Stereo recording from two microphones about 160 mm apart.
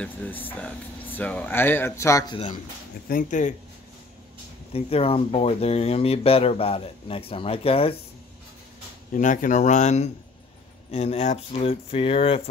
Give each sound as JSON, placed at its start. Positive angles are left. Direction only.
{"t": 0.0, "sound": "speech", "side_deg": 10}
{"t": 3.1, "sound": "speech", "side_deg": 55}
{"t": 4.7, "sound": "speech", "side_deg": 40}
{"t": 9.1, "sound": "speech", "side_deg": 55}